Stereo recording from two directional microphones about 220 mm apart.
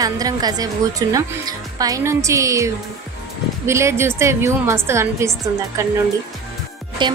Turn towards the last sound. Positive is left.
turn(degrees=-20)  # may be behind; listen again after turning